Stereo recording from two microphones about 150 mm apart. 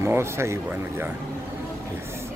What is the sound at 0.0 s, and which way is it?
Speech, 15° right (ahead or behind).